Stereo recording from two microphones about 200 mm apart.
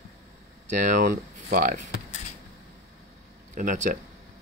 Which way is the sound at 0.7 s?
40° right (ahead or behind).